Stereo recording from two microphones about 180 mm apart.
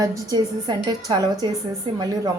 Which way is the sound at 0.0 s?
20° right (ahead or behind).